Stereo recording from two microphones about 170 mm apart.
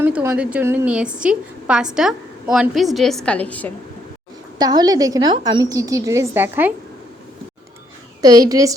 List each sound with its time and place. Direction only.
0.0 s a woman's voice: 15° right (ahead or behind); by 3.7 s 10° left (ahead or behind)
4.5 s a woman's voice: 25° right (ahead or behind)
8.2 s a woman's voice: 20° right (ahead or behind)